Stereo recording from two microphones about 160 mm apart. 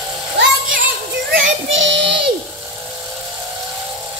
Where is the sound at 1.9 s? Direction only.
90° right.